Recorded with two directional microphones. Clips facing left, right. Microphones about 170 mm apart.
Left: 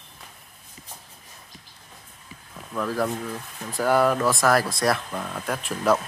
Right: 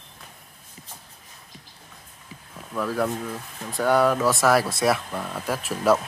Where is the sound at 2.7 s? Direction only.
Centre (ahead or behind).